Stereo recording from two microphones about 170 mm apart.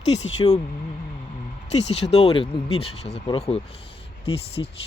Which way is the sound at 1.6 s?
40° left (ahead or behind).